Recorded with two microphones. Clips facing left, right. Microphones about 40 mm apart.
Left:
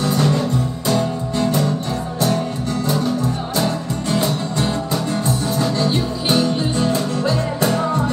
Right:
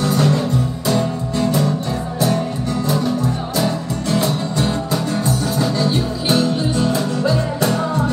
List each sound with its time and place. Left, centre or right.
0.0 s music: centre
3.5 s music: centre